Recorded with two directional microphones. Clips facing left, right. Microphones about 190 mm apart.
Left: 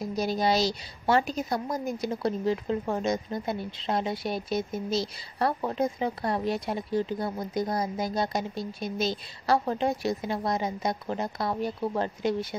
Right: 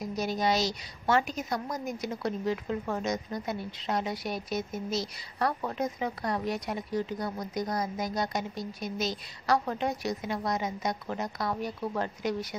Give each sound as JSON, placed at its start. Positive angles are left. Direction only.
{"t": 0.0, "sound": "a woman's voice", "side_deg": 30}